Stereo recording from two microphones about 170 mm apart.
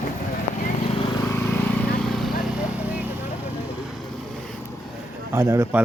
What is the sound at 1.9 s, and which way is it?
Vehicle, centre (ahead or behind).